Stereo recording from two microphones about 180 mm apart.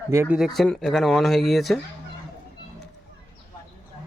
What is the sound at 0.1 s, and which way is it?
Speech, 15° right (ahead or behind).